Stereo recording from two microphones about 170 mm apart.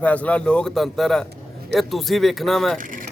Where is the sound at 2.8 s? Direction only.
50° right (ahead or behind).